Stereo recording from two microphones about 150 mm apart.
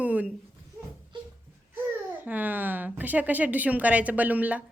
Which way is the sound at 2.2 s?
10° right (ahead or behind).